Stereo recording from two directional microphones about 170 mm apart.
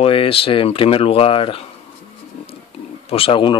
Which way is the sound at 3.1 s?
35° left (ahead or behind).